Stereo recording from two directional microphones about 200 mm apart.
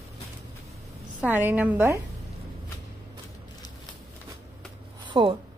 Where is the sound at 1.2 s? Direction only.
10° right (ahead or behind).